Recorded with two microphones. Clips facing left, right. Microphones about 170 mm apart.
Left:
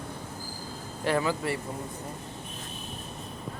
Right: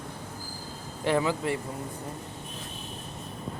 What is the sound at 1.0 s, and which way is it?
Speech, 20° right (ahead or behind).